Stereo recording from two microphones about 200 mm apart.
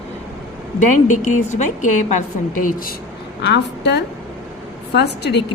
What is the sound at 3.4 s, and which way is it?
A woman's voice, 60° left (ahead or behind).